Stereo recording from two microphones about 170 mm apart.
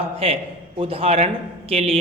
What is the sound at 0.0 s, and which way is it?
A man's voice, 35° right (ahead or behind).